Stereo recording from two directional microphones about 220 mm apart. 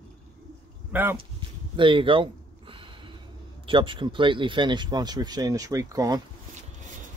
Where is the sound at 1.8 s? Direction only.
20° right (ahead or behind).